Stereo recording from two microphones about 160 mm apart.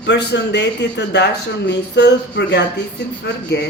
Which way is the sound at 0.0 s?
90° left.